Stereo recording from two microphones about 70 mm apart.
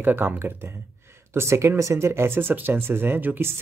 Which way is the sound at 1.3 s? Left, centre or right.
Right.